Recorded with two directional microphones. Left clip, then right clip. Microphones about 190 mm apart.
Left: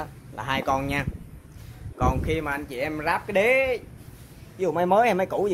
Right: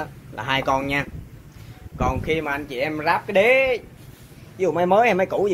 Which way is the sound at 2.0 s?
15° left (ahead or behind).